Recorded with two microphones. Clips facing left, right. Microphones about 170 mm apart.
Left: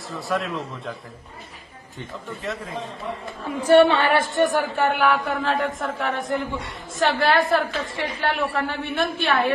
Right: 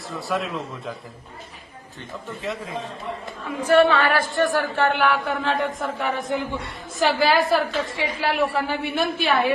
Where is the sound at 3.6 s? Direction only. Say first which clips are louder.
Left 2 dB; 30° left (ahead or behind); by 5.0 s 10° left (ahead or behind).